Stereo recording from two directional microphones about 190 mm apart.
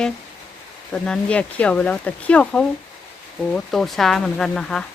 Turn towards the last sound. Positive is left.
turn(degrees=5)  # may be behind; listen again after turning